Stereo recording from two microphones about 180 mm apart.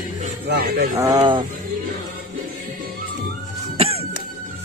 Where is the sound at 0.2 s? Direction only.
50° right (ahead or behind).